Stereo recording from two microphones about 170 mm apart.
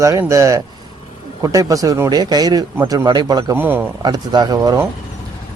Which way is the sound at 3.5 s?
10° right (ahead or behind).